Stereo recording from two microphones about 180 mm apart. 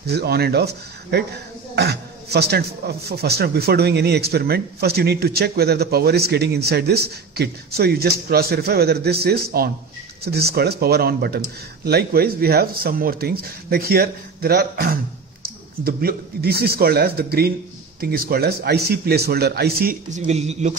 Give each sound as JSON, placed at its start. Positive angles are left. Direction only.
{"t": 0.0, "sound": "a man's voice", "side_deg": -65}
{"t": 1.8, "sound": "a man's voice", "side_deg": -65}